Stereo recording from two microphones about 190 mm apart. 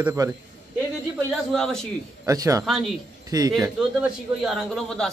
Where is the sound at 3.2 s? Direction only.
20° right (ahead or behind).